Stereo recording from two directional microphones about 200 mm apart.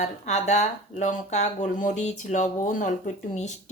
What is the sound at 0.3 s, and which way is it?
Speech, 35° left (ahead or behind).